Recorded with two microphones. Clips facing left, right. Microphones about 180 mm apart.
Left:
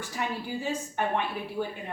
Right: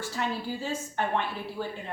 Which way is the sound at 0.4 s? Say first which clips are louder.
Left 1 dB; 15° left (ahead or behind).